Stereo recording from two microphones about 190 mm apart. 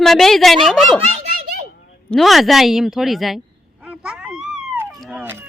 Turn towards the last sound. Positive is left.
turn(degrees=-10)  # may be behind; listen again after turning